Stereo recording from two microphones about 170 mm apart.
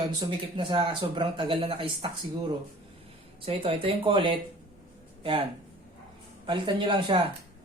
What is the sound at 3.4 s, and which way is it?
Speech, 35° right (ahead or behind).